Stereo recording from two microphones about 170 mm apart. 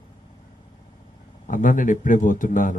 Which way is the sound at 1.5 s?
50° left (ahead or behind).